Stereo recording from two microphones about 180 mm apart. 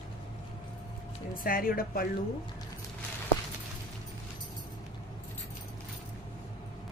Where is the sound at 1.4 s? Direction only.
55° left (ahead or behind).